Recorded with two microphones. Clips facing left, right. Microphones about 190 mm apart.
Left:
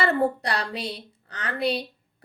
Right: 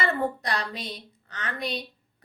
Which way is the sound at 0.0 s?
35° left (ahead or behind).